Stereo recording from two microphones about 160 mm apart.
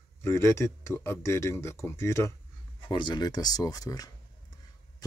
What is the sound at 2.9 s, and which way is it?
Speech, 30° left (ahead or behind).